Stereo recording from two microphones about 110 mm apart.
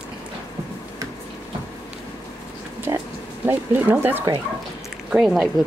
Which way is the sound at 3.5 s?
20° right (ahead or behind).